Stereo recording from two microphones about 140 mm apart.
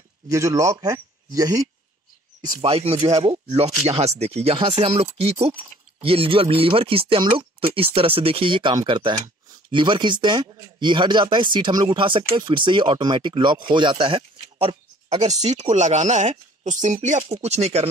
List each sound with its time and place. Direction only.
0.3 s speech: 20° right (ahead or behind)
2.6 s speech: 45° right (ahead or behind)
4.6 s speech: 40° right (ahead or behind)